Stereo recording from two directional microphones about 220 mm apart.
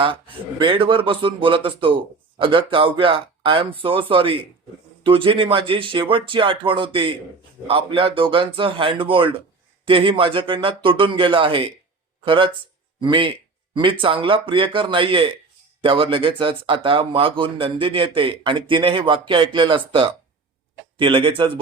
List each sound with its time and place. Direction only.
0.6 s speech: 25° right (ahead or behind)